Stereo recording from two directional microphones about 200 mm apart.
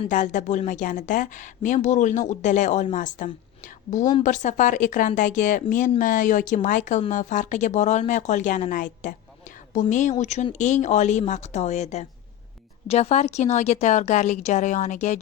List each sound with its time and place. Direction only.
0.1 s speech: 40° left (ahead or behind)